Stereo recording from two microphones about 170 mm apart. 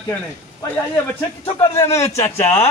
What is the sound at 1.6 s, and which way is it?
Speech, 15° left (ahead or behind).